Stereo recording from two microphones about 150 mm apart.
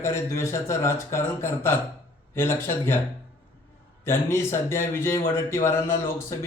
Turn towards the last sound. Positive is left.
turn(degrees=20)  # may be behind; listen again after turning